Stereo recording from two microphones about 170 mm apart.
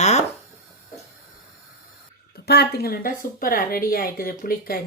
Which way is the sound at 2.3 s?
70° left (ahead or behind).